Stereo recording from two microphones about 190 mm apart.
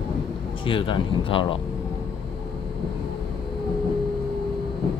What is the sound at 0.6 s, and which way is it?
Speech, 25° left (ahead or behind).